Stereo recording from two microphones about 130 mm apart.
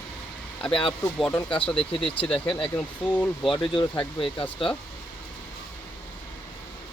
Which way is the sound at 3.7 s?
40° left (ahead or behind).